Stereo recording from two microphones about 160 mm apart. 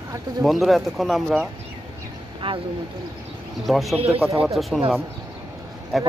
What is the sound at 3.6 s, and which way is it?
Speech, centre (ahead or behind).